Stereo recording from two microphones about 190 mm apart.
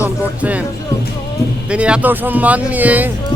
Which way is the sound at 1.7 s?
5° right (ahead or behind).